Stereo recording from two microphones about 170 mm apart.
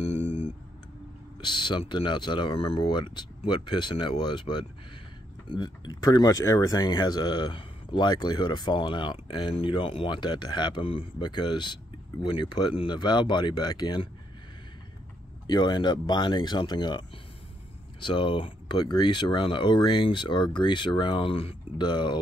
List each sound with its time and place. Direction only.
0.0 s a sound: 35° left (ahead or behind)
1.4 s speech: 25° left (ahead or behind)
15.4 s speech: 25° left (ahead or behind)
18.0 s speech: 30° left (ahead or behind)